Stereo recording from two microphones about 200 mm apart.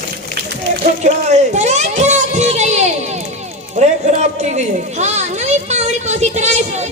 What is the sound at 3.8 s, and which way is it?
Run, 35° right (ahead or behind).